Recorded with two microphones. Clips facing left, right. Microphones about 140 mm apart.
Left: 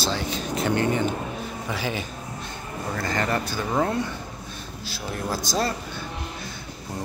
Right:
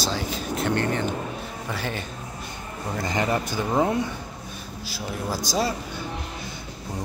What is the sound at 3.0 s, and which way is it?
Speech, 15° right (ahead or behind).